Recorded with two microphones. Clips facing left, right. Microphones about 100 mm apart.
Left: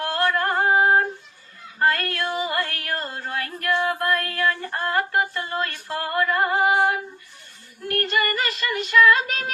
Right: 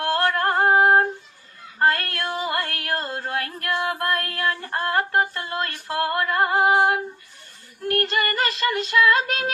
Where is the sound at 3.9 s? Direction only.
35° right (ahead or behind).